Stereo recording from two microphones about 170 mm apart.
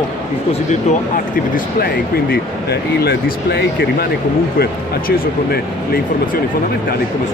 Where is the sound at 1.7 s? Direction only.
65° left (ahead or behind).